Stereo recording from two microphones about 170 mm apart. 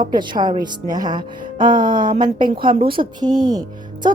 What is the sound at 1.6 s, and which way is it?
Music, 50° right (ahead or behind).